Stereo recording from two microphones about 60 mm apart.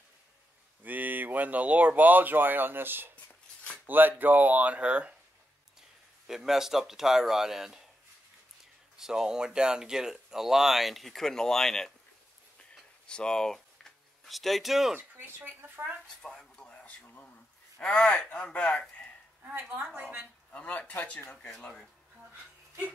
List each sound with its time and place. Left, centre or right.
0.8 s speech: right
6.2 s speech: centre
8.9 s speech: centre
13.0 s speech: centre
15.0 s speech: right
16.2 s a sound: centre
17.7 s speech: left
20.0 s speech: right
20.5 s speech: left
21.4 s speech: centre